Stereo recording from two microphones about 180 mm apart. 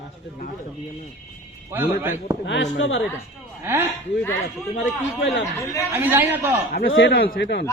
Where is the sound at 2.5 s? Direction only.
85° left.